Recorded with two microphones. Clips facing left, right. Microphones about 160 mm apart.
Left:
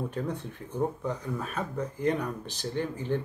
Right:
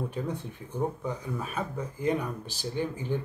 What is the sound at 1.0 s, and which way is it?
Speech, 5° right (ahead or behind).